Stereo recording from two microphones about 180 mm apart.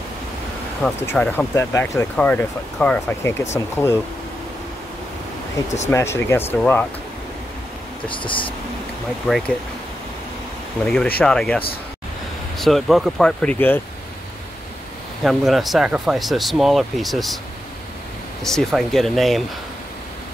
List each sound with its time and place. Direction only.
0.8 s speech: 5° left (ahead or behind)
5.9 s speech: 15° left (ahead or behind)
8.1 s speech: 30° left (ahead or behind)
9.3 s speech: 5° right (ahead or behind)
11.1 s speech: 5° left (ahead or behind)
15.2 s speech: centre (ahead or behind)
18.4 s speech: centre (ahead or behind)